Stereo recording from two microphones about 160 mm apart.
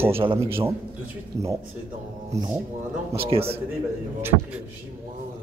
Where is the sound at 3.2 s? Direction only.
35° right (ahead or behind).